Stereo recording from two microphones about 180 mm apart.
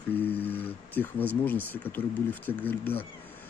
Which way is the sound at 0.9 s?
10° left (ahead or behind).